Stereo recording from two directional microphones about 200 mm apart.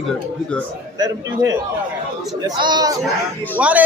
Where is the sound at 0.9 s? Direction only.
20° right (ahead or behind).